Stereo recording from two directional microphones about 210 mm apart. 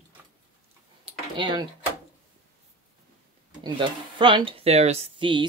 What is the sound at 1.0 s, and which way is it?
Typing, 20° right (ahead or behind).